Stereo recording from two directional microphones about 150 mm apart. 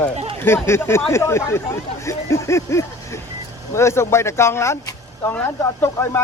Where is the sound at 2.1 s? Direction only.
20° left (ahead or behind).